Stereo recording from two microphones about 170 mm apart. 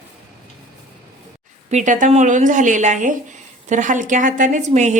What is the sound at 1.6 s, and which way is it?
Speech, 45° right (ahead or behind).